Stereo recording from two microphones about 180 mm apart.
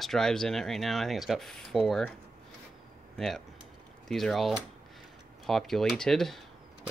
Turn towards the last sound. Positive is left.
turn(degrees=0)  # may be behind; listen again after turning